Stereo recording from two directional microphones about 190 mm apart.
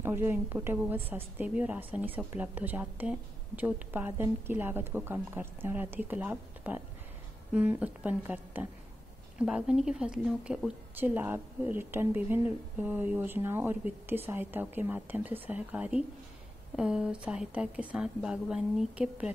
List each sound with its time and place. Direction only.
0.0 s a woman's voice: 10° right (ahead or behind)